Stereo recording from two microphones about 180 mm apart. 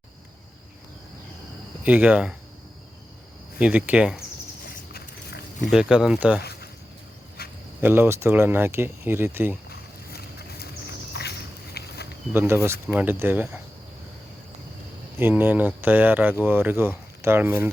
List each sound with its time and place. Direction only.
1.8 s speech: 10° right (ahead or behind)
3.6 s speech: 10° right (ahead or behind)
4.7 s a sound: 60° left (ahead or behind)
5.7 s speech: 5° right (ahead or behind)
6.4 s a sound: 60° left (ahead or behind)
7.4 s cricket: 60° left (ahead or behind)
7.8 s speech: 10° right (ahead or behind)
9.6 s a sound: 60° left (ahead or behind)
12.3 s speech: 15° right (ahead or behind)
15.2 s speech: 10° right (ahead or behind)